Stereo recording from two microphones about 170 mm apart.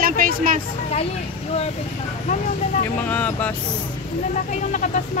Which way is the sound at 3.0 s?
10° left (ahead or behind).